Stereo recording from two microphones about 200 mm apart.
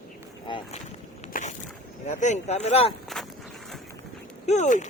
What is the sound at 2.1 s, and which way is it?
Speech, 35° left (ahead or behind).